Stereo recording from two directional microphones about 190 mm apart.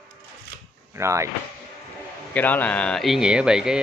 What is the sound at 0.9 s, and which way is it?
Speech, 15° right (ahead or behind).